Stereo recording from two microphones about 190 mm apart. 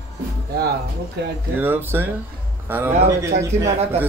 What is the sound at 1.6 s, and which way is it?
A man's voice, 10° right (ahead or behind).